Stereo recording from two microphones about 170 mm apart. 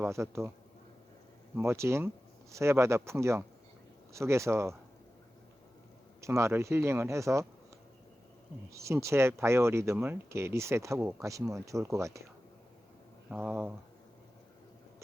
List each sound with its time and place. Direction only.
0.0 s speech: 15° right (ahead or behind)
1.5 s speech: 15° right (ahead or behind)
6.2 s speech: 15° right (ahead or behind)
8.7 s speech: 15° right (ahead or behind)
13.3 s speech: 10° right (ahead or behind)